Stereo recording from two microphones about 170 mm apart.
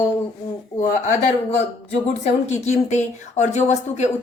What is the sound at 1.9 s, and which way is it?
A woman's voice, 40° left (ahead or behind).